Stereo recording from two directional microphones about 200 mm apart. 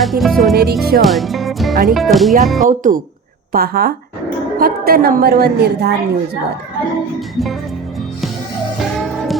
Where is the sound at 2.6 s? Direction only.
40° right (ahead or behind).